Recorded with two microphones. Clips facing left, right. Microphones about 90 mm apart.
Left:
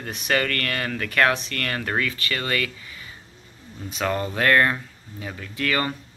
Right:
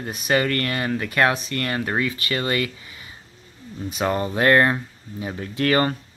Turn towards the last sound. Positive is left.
turn(degrees=-35)  # may be behind; listen again after turning